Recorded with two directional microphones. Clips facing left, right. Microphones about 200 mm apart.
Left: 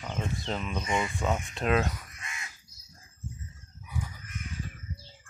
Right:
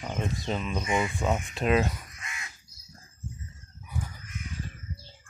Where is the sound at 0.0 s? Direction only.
5° right (ahead or behind).